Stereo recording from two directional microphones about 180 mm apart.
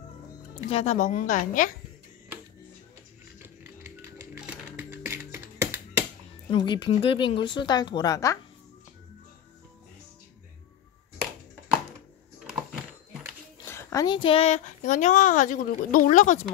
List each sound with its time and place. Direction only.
0.7 s speech: 35° left (ahead or behind)
1.0 s speech: 50° left (ahead or behind)
3.3 s music: 15° right (ahead or behind)
6.5 s a woman's voice: 25° left (ahead or behind)
12.4 s a sound: 5° right (ahead or behind)
13.7 s speech: 15° left (ahead or behind); by 16.4 s 45° left (ahead or behind)